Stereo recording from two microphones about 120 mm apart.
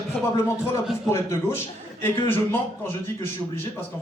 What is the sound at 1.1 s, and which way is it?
Speech, 25° left (ahead or behind).